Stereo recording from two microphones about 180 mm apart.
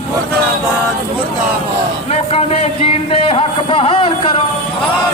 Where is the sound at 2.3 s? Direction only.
35° left (ahead or behind).